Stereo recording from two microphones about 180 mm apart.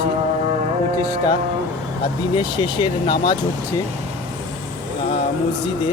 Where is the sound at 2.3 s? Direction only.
25° left (ahead or behind).